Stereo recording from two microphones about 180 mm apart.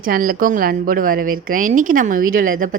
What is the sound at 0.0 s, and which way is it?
A woman's voice, 50° right (ahead or behind).